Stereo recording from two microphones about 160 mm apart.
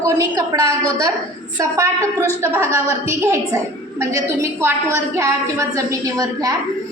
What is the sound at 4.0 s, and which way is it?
A woman's voice, 15° right (ahead or behind).